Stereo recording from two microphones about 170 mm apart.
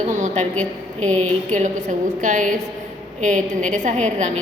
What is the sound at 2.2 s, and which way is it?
A woman's voice, 50° right (ahead or behind).